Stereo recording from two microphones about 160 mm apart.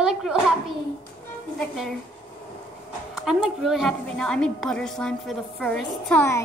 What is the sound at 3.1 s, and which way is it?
A woman's voice, 5° right (ahead or behind).